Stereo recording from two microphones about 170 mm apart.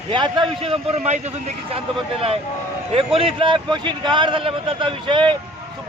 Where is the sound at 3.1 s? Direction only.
30° right (ahead or behind).